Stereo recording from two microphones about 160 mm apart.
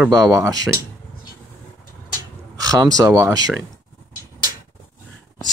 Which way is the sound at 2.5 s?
20° right (ahead or behind).